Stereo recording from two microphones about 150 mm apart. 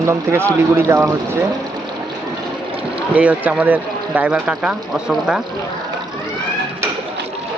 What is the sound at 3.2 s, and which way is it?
Speech, 10° right (ahead or behind).